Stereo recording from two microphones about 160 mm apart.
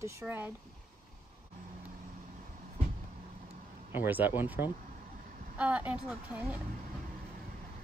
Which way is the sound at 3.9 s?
10° right (ahead or behind).